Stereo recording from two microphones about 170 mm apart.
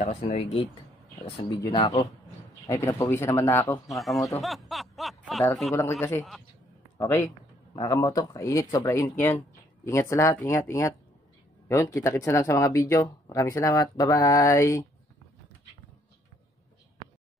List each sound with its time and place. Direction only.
0.0 s speech: 40° left (ahead or behind)
1.7 s speech: 25° left (ahead or behind)
2.6 s speech: 15° left (ahead or behind)
3.8 s speech: centre (ahead or behind)
4.4 s snicker: centre (ahead or behind)
5.8 s speech: 15° left (ahead or behind)